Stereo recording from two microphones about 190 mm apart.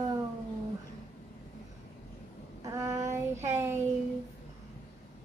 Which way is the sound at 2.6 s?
15° right (ahead or behind).